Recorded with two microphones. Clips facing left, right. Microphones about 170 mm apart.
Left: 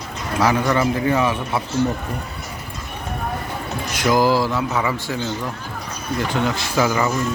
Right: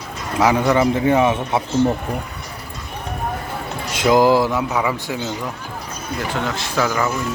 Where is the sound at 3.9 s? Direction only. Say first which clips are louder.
Right 3 dB; 20° right (ahead or behind).